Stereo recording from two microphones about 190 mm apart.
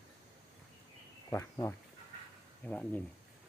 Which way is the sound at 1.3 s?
15° left (ahead or behind).